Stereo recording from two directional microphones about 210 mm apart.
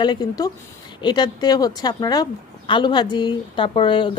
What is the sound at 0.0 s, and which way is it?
Speech, 20° left (ahead or behind).